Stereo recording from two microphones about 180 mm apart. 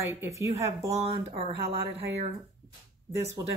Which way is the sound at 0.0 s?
15° right (ahead or behind).